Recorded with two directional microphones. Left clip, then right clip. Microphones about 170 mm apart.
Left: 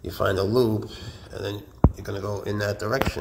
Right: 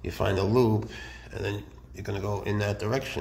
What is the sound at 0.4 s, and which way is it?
A man's voice, 10° left (ahead or behind).